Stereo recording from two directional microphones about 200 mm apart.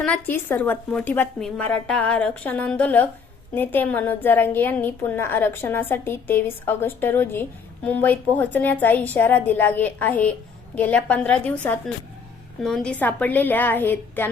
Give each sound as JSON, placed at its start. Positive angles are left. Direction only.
{"t": 0.0, "sound": "a woman's voice", "side_deg": 10}